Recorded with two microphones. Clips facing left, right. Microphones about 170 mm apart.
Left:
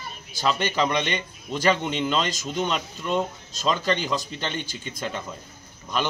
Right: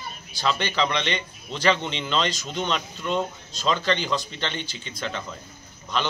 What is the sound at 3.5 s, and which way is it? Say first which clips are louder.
Speech: even; 45° left (ahead or behind).